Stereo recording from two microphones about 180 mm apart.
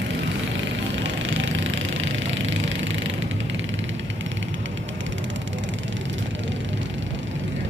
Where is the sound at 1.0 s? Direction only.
90° right.